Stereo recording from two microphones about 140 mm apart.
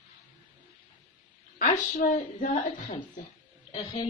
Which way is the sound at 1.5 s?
70° left (ahead or behind).